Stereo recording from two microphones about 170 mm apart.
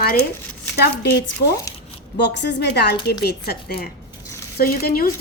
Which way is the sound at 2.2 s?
90° left.